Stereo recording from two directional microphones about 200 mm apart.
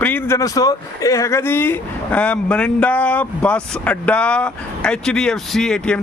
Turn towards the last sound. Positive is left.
turn(degrees=5)  # may be behind; listen again after turning